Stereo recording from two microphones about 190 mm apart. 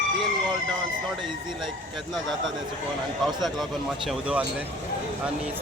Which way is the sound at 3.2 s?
Centre (ahead or behind).